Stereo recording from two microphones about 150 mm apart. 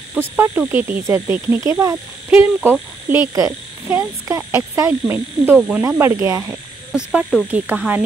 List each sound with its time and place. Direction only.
0.1 s speech: 10° right (ahead or behind)
6.9 s speech: 5° right (ahead or behind)
7.5 s speech: 10° right (ahead or behind)